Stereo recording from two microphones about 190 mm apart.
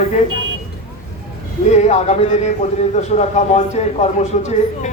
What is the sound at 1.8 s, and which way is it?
A man's voice, 35° left (ahead or behind).